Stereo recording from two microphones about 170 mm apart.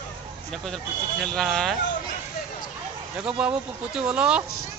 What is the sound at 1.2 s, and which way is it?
Speech, centre (ahead or behind).